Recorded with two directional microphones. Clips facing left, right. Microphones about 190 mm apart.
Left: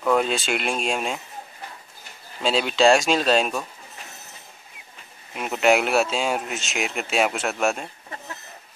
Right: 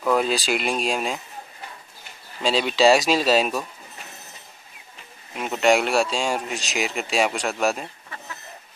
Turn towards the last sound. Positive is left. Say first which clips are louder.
# even
turn(degrees=0)  # may be behind; listen again after turning